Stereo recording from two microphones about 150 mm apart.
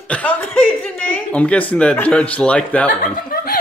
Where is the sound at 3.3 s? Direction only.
70° left (ahead or behind).